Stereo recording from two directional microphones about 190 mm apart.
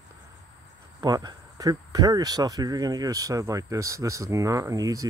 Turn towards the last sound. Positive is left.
turn(degrees=-20)  # may be behind; listen again after turning